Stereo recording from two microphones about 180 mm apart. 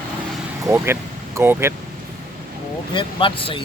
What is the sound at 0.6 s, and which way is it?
Speech, 15° right (ahead or behind).